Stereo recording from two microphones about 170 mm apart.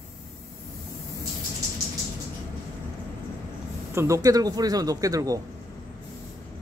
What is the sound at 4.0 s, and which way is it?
Speech, 20° right (ahead or behind).